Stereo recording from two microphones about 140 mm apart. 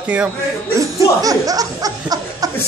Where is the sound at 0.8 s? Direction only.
25° right (ahead or behind).